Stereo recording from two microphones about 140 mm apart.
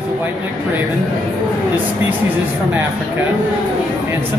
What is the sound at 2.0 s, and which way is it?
Speech, 10° right (ahead or behind).